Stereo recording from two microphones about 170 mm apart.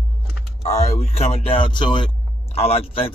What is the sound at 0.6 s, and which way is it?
Vehicle, 40° left (ahead or behind).